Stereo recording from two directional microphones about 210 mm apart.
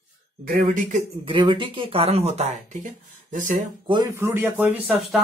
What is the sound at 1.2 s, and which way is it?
Speech, 25° right (ahead or behind).